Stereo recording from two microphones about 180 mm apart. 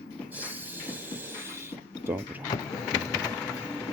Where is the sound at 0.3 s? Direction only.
10° right (ahead or behind).